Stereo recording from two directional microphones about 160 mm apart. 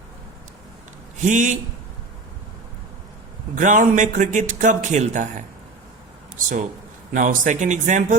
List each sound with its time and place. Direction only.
1.2 s a man's voice: 50° right (ahead or behind)
3.5 s a man's voice: 55° right (ahead or behind)
7.1 s a man's voice: 55° right (ahead or behind)